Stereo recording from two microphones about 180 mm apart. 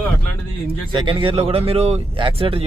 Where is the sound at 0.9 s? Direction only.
25° right (ahead or behind).